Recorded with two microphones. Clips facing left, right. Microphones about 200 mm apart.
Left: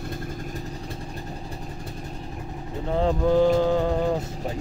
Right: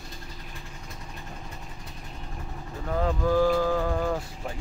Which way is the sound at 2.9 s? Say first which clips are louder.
Left 4 dB; 25° left (ahead or behind).